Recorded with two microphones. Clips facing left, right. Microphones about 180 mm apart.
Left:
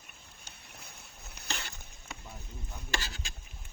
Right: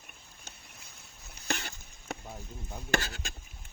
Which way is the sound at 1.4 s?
65° left (ahead or behind).